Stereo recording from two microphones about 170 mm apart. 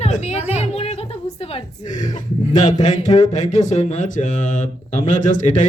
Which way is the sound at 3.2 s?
45° left (ahead or behind).